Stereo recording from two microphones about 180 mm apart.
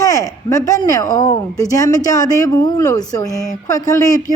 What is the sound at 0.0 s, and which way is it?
A woman's voice, 20° left (ahead or behind).